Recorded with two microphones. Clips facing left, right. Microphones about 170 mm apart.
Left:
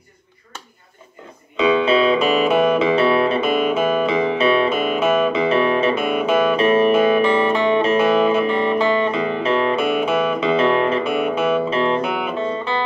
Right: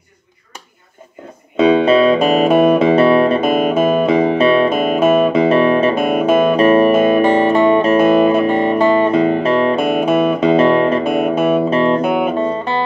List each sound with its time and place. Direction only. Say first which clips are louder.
1.6 s music: right 5 dB; 45° right (ahead or behind)